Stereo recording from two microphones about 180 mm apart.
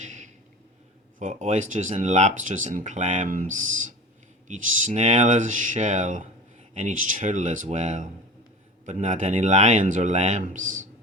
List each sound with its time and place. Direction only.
1.2 s speech: 40° right (ahead or behind)